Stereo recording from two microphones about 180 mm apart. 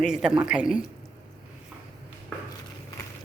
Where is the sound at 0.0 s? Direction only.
5° right (ahead or behind).